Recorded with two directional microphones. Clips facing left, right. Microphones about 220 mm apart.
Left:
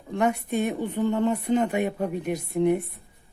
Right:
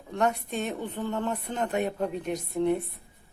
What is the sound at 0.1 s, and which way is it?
A woman's voice, 10° left (ahead or behind).